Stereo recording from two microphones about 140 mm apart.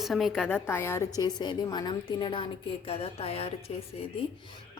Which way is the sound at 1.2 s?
30° left (ahead or behind).